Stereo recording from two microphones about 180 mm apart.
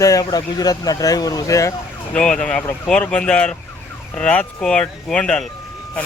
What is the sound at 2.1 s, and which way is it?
Speech, 5° left (ahead or behind).